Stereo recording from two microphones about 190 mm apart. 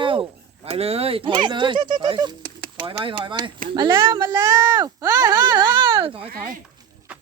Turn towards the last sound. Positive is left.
turn(degrees=-25)  # may be behind; listen again after turning